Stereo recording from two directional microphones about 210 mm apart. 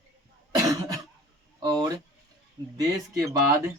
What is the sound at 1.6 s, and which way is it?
Speech, 15° right (ahead or behind).